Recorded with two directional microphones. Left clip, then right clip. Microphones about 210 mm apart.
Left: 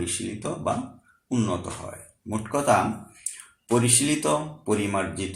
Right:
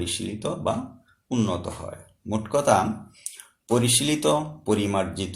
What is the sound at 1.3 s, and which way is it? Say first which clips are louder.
Speech: right 1 dB; 40° right (ahead or behind).